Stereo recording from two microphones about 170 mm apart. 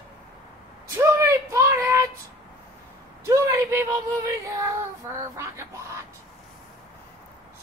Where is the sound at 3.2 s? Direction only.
20° right (ahead or behind).